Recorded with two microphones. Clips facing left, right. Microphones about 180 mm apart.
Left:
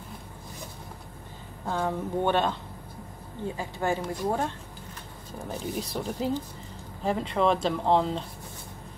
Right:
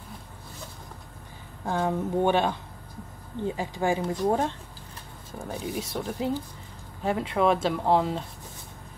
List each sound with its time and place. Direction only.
1.8 s speech: 10° right (ahead or behind)
3.5 s speech: 15° right (ahead or behind)
5.4 s speech: centre (ahead or behind)